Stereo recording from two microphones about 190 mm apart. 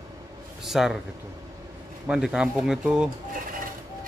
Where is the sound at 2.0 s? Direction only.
5° right (ahead or behind).